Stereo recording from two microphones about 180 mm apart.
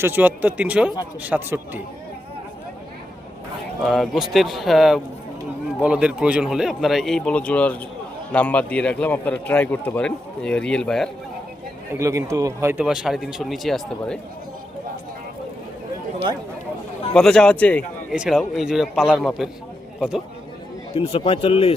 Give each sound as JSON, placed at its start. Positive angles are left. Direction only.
{"t": 0.0, "sound": "speech", "side_deg": -10}
{"t": 3.8, "sound": "a man's voice", "side_deg": 0}
{"t": 11.9, "sound": "speech", "side_deg": -15}
{"t": 12.8, "sound": "a man's voice", "side_deg": -5}
{"t": 17.2, "sound": "a man's voice", "side_deg": 5}
{"t": 18.1, "sound": "a man's voice", "side_deg": -5}
{"t": 20.9, "sound": "speech", "side_deg": 35}